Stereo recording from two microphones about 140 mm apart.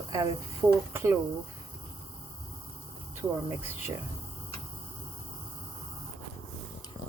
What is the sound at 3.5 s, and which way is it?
Speech, 15° right (ahead or behind).